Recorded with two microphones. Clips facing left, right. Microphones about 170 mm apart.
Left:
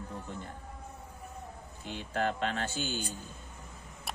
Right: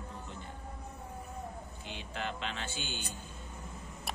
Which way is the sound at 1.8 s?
45° left (ahead or behind).